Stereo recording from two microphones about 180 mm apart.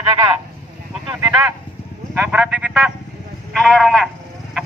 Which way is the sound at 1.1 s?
10° right (ahead or behind).